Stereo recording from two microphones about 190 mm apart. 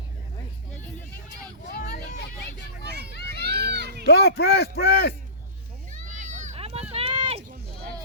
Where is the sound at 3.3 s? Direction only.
60° right (ahead or behind).